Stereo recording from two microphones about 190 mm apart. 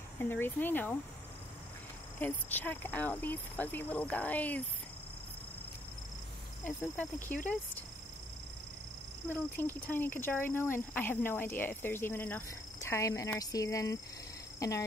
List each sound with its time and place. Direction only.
0.2 s speech: 10° left (ahead or behind)
2.1 s speech: 10° left (ahead or behind)
6.6 s speech: 10° left (ahead or behind)
9.3 s speech: 10° left (ahead or behind)